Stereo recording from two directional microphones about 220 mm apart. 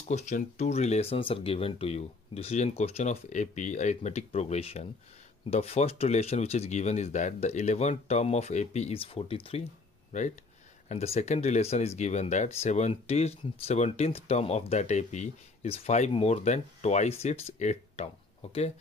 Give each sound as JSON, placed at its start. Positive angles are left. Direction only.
{"t": 0.1, "sound": "speech", "side_deg": 30}
{"t": 10.9, "sound": "speech", "side_deg": 30}